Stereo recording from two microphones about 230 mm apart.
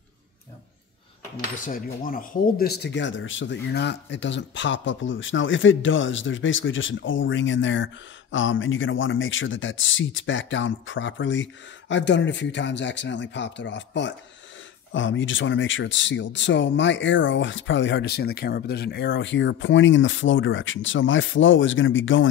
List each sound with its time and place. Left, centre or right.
1.6 s speech: left